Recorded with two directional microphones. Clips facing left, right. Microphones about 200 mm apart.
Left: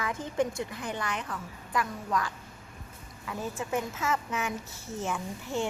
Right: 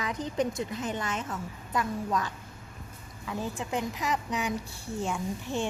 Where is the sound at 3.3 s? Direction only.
20° right (ahead or behind).